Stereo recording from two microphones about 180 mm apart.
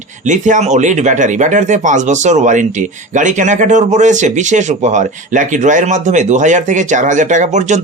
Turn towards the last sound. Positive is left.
turn(degrees=-40)  # may be behind; listen again after turning